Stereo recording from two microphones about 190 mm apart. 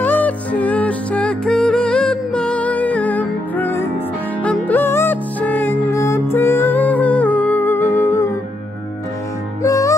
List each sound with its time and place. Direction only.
0.0 s music: 10° left (ahead or behind)
9.6 s music: 15° left (ahead or behind)